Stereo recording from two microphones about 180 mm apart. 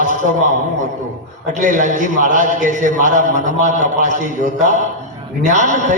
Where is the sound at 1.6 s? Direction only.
45° right (ahead or behind).